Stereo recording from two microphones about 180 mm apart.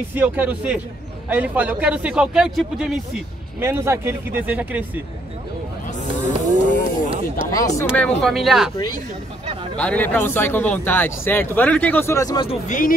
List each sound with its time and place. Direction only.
0.1 s a man's voice: 10° right (ahead or behind)
3.6 s speech: 15° right (ahead or behind)
6.1 s a sound: 45° left (ahead or behind)
7.5 s speech: 20° left (ahead or behind)
8.0 s a man's voice: centre (ahead or behind)
9.8 s speech: 10° left (ahead or behind)
12.4 s a sound: 45° left (ahead or behind)